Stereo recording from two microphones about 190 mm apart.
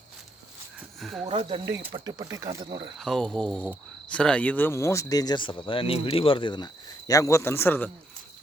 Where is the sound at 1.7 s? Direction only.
65° right (ahead or behind).